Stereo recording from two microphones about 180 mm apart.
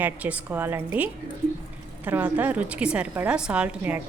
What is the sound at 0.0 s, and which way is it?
A woman's voice, 10° right (ahead or behind).